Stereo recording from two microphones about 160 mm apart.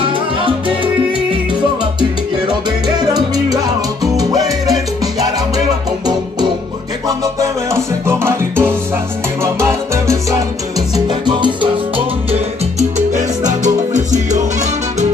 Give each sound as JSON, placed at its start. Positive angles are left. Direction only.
{"t": 0.0, "sound": "salsa music", "side_deg": -35}
{"t": 3.0, "sound": "salsa music", "side_deg": -25}
{"t": 7.1, "sound": "music", "side_deg": -20}
{"t": 9.4, "sound": "salsa music", "side_deg": -15}
{"t": 11.1, "sound": "salsa music", "side_deg": -30}
{"t": 12.3, "sound": "salsa music", "side_deg": -45}
{"t": 13.9, "sound": "music", "side_deg": -50}